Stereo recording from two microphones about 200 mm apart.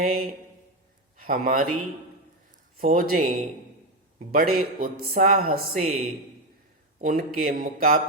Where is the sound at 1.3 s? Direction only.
45° right (ahead or behind).